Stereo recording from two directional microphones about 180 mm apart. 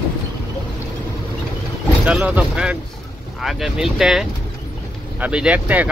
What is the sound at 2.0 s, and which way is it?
Speech, 5° right (ahead or behind).